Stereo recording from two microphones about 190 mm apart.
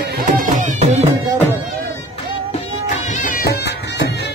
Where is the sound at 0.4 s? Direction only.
40° right (ahead or behind).